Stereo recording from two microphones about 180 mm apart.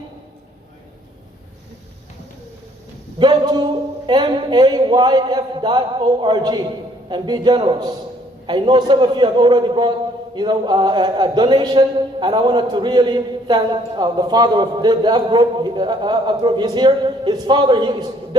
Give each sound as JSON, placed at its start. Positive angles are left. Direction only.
{"t": 3.2, "sound": "a man's voice", "side_deg": -25}